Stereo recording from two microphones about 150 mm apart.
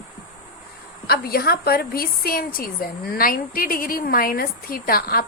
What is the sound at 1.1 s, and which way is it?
A woman's voice, 90° left.